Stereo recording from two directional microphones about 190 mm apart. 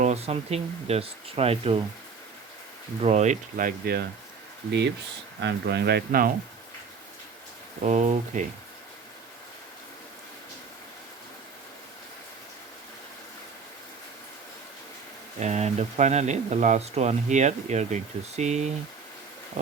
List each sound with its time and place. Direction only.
0.0 s speech: 35° right (ahead or behind)
3.0 s speech: 35° right (ahead or behind)
5.4 s speech: 65° right (ahead or behind)
7.8 s speech: 35° right (ahead or behind)
15.4 s speech: 35° right (ahead or behind)